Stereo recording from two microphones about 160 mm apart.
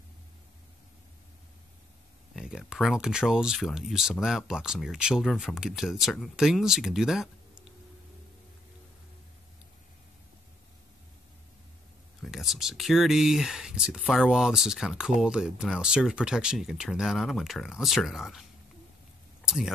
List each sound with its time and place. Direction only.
2.3 s speech: 5° right (ahead or behind)
12.2 s speech: centre (ahead or behind)
19.4 s a sound: centre (ahead or behind)